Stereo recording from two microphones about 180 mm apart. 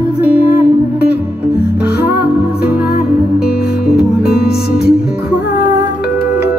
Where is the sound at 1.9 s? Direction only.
65° left (ahead or behind).